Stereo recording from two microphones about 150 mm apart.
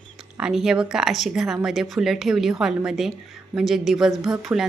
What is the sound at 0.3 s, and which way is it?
A woman's voice, 5° right (ahead or behind).